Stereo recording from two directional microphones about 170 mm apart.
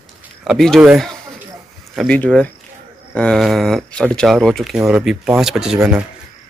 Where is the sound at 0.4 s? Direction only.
Centre (ahead or behind).